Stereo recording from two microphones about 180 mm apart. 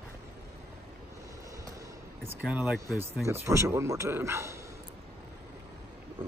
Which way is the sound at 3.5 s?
15° right (ahead or behind).